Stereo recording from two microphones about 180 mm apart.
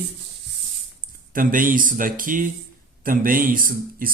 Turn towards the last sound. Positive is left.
turn(degrees=-50)  # may be behind; listen again after turning